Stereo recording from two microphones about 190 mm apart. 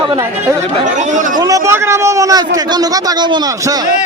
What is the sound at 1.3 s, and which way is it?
A man's voice, 15° right (ahead or behind).